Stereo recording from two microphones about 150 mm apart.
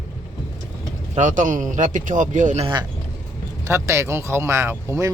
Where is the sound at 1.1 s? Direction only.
55° right (ahead or behind).